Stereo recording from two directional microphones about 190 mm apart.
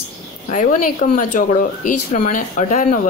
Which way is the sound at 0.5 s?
40° left (ahead or behind).